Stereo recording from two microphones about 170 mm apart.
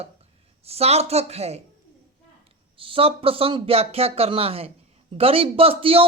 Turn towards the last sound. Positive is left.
turn(degrees=-35)  # may be behind; listen again after turning